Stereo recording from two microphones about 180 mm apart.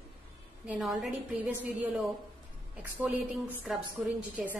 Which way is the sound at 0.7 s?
Centre (ahead or behind).